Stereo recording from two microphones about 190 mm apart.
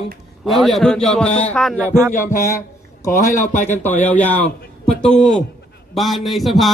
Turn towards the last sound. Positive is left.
turn(degrees=0)  # may be behind; listen again after turning